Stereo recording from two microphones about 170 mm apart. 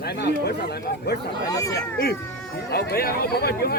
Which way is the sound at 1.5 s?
20° left (ahead or behind).